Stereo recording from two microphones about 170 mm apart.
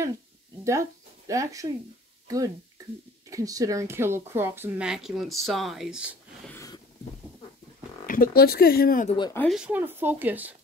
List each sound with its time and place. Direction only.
0.7 s speech: 20° right (ahead or behind)
6.5 s a sound: 20° left (ahead or behind)
8.1 s speech: 60° left (ahead or behind)
9.0 s speech: 30° left (ahead or behind)
9.5 s speech: 5° right (ahead or behind)